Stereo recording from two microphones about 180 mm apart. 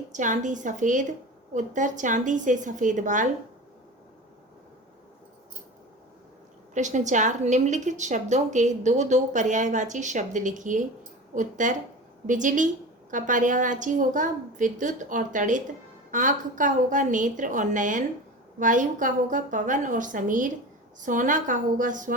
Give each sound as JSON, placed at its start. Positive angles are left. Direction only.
{"t": 0.1, "sound": "a woman's voice", "side_deg": -45}
{"t": 6.7, "sound": "a woman's voice", "side_deg": -40}